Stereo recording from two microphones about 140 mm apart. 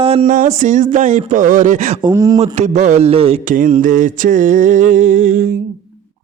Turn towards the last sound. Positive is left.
turn(degrees=-65)  # may be behind; listen again after turning